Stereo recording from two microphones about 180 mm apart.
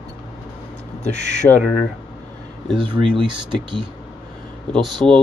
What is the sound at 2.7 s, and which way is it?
Speech, 30° right (ahead or behind).